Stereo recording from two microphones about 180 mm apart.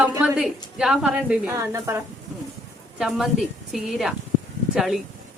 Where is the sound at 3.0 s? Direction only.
Centre (ahead or behind).